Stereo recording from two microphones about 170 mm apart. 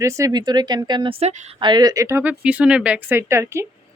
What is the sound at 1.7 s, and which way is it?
Speech, 25° right (ahead or behind).